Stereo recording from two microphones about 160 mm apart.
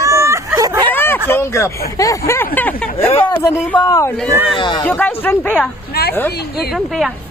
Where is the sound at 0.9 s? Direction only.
15° left (ahead or behind).